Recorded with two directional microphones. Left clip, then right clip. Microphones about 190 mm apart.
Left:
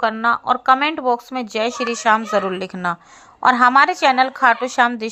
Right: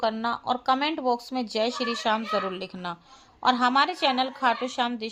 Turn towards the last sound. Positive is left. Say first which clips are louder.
# left 11 dB
turn(degrees=20)  # may be behind; listen again after turning